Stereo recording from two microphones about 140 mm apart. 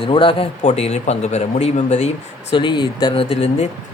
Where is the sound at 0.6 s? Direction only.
50° left (ahead or behind).